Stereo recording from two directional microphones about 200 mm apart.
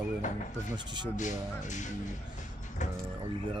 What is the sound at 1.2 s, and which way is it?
Speech, 35° left (ahead or behind).